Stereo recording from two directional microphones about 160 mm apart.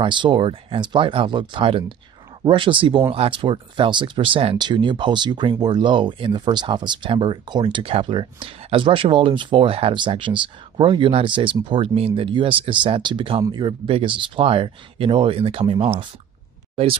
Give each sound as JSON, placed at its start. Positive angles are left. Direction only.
{"t": 0.0, "sound": "speech", "side_deg": -30}